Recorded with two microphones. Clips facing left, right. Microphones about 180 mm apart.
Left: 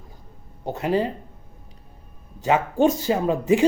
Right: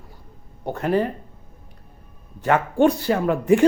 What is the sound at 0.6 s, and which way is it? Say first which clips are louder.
Speech: right 1 dB; 15° left (ahead or behind).